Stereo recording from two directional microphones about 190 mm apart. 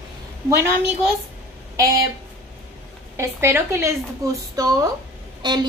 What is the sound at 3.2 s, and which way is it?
Speech, 15° right (ahead or behind).